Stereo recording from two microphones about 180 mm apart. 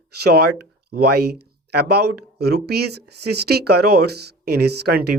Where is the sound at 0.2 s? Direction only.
65° right (ahead or behind).